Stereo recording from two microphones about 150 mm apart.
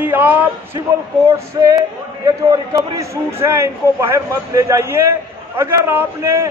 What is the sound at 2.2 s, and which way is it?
A man's voice, 25° right (ahead or behind).